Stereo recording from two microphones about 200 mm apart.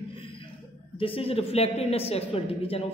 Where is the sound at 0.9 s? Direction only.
25° left (ahead or behind).